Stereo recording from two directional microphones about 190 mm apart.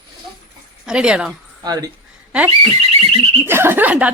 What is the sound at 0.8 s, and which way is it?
Speech, 5° right (ahead or behind).